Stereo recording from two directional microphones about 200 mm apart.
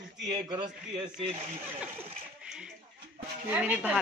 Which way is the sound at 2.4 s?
5° right (ahead or behind).